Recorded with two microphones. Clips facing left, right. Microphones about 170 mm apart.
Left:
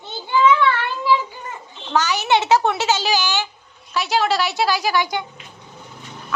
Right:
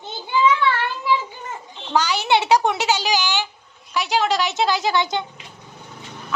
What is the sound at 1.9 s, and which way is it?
A child's voice, 10° right (ahead or behind).